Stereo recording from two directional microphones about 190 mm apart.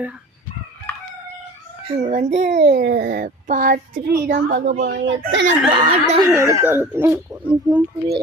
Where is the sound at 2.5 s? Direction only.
50° right (ahead or behind); by 5.4 s 70° right (ahead or behind).